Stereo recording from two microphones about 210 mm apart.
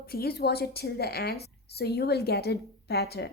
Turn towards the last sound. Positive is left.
turn(degrees=50)  # may be behind; listen again after turning